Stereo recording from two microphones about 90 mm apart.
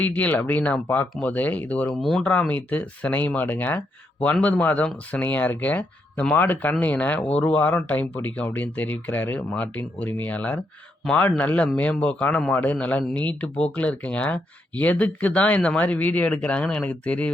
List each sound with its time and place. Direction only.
0.0 s speech: 15° left (ahead or behind)
1.9 s speech: centre (ahead or behind)
2.2 s speech: 15° left (ahead or behind)